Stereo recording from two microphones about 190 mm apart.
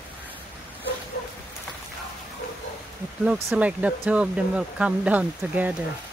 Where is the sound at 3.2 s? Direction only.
5° right (ahead or behind).